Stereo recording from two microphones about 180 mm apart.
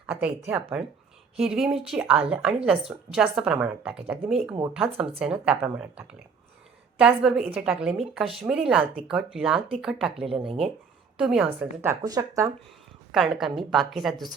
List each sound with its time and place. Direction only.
0.1 s speech: 5° right (ahead or behind)
4.9 s a woman's voice: 30° right (ahead or behind)
5.2 s speech: 5° right (ahead or behind)
11.6 s speech: 15° right (ahead or behind)
13.1 s speech: centre (ahead or behind)